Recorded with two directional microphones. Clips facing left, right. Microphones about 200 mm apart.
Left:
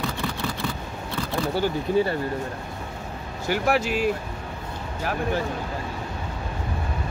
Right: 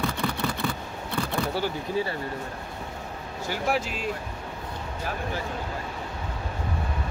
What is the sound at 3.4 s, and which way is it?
Speech, 70° left (ahead or behind).